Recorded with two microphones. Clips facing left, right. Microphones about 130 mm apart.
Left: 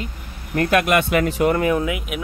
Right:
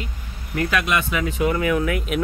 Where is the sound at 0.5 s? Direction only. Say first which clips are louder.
Left 5 dB; 50° left (ahead or behind); by 1.4 s 70° left (ahead or behind).